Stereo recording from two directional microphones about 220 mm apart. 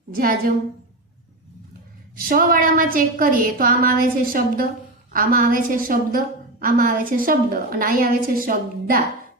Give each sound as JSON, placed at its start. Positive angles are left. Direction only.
{"t": 0.1, "sound": "a woman's voice", "side_deg": -40}
{"t": 2.1, "sound": "a woman's voice", "side_deg": -40}